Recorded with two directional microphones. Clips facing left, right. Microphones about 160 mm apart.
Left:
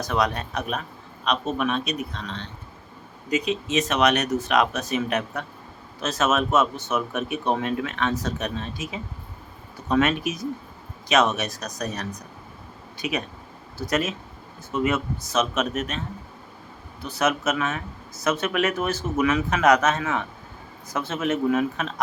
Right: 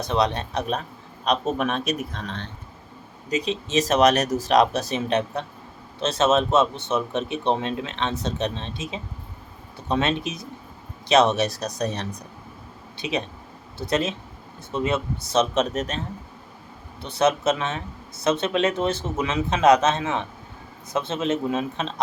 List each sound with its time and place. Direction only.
0.0 s a man's voice: 25° right (ahead or behind); by 2.3 s 50° right (ahead or behind)
3.2 s a man's voice: 35° right (ahead or behind)
17.0 s speech: 30° right (ahead or behind)